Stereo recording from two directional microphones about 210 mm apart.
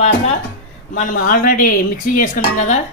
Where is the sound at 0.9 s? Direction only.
45° left (ahead or behind).